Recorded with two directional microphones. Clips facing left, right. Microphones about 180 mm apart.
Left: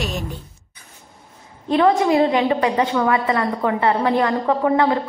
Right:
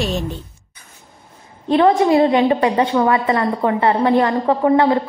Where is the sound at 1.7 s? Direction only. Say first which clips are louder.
Right 3 dB; 30° right (ahead or behind).